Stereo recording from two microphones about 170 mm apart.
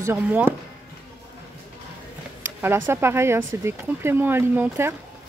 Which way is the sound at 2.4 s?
15° right (ahead or behind).